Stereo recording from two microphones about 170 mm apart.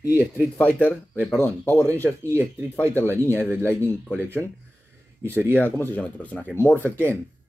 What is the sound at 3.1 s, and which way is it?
Speech, 15° right (ahead or behind).